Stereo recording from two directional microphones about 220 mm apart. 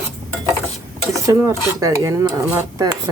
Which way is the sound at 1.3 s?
15° right (ahead or behind).